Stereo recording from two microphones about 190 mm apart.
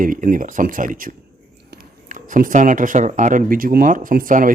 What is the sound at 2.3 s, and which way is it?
Speech, 45° right (ahead or behind).